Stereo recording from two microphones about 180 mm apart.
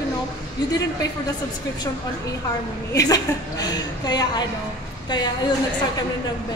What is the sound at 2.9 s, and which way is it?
A woman's voice, 20° left (ahead or behind).